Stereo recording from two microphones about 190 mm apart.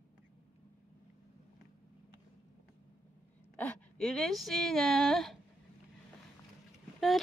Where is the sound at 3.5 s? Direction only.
10° left (ahead or behind).